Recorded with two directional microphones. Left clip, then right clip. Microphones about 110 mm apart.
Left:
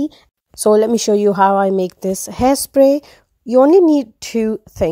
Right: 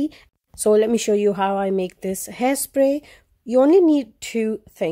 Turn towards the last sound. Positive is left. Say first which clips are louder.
# left 5 dB
turn(degrees=50)  # may be behind; listen again after turning